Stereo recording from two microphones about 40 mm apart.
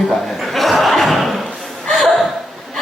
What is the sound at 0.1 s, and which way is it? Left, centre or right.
Chuckle, centre.